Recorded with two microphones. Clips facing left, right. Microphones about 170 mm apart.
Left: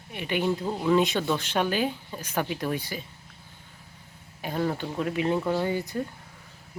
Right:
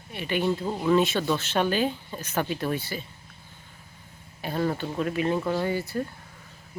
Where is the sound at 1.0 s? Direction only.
15° left (ahead or behind).